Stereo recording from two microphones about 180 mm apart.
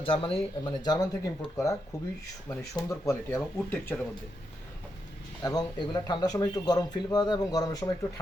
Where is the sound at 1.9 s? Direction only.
15° left (ahead or behind).